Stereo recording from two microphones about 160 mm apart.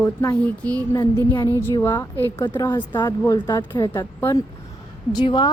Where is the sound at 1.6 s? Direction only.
15° left (ahead or behind).